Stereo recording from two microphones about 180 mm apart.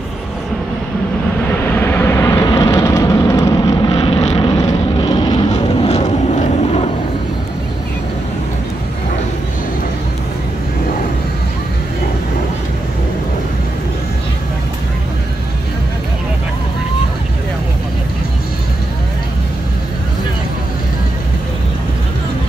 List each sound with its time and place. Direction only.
1.7 s vehicle: 10° left (ahead or behind)
3.9 s vehicle: 35° left (ahead or behind)
5.5 s vehicle: 35° left (ahead or behind)